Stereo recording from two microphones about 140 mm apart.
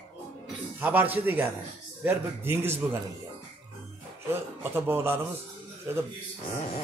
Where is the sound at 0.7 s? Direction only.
15° right (ahead or behind).